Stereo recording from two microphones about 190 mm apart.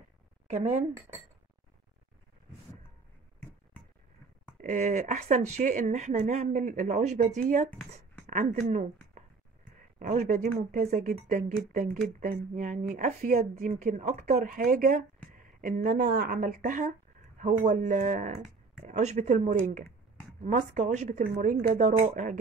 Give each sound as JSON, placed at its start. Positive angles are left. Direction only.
{"t": 0.5, "sound": "speech", "side_deg": -40}
{"t": 4.6, "sound": "a woman's voice", "side_deg": -40}